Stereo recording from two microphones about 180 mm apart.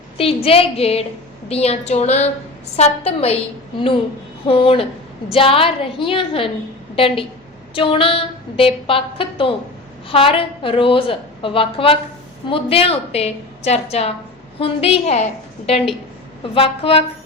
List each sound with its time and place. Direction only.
0.4 s a woman's voice: 30° left (ahead or behind)